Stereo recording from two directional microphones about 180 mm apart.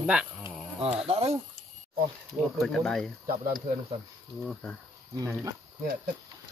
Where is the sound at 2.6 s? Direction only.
Centre (ahead or behind).